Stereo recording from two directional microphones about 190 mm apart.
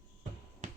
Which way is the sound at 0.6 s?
45° right (ahead or behind).